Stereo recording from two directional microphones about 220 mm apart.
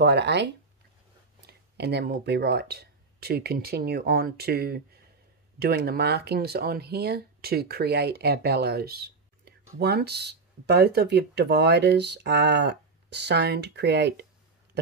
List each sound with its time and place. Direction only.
0.0 s speech: 50° right (ahead or behind)